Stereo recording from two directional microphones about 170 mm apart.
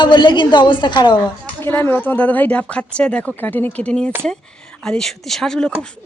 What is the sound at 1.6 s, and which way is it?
Speech, 10° left (ahead or behind).